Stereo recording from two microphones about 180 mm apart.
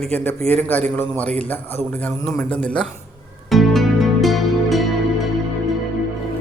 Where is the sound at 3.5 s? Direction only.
Centre (ahead or behind).